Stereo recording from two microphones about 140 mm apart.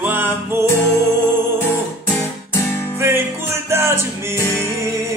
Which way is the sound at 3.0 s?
15° right (ahead or behind).